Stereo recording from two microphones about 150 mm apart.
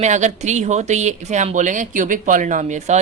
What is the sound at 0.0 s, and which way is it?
Speech, 55° right (ahead or behind).